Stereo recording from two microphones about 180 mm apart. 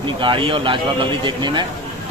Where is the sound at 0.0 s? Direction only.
30° right (ahead or behind).